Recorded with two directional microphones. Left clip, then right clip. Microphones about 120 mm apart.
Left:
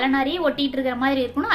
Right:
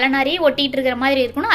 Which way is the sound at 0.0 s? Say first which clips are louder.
Right 5 dB; 25° right (ahead or behind).